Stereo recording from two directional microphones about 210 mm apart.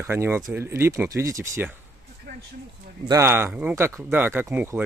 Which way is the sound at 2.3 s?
50° right (ahead or behind).